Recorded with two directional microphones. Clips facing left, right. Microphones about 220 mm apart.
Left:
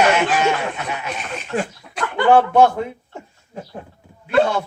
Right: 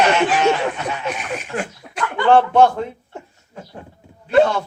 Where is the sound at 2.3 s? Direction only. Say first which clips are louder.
Even; 10° left (ahead or behind).